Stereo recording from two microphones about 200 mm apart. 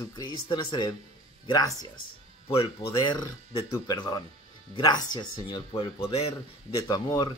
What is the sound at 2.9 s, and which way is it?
Speech, 25° left (ahead or behind).